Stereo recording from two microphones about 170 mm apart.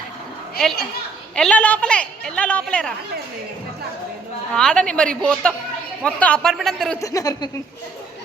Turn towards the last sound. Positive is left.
turn(degrees=20)  # may be behind; listen again after turning